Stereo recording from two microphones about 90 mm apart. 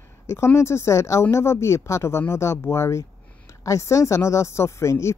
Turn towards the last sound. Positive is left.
turn(degrees=30)  # may be behind; listen again after turning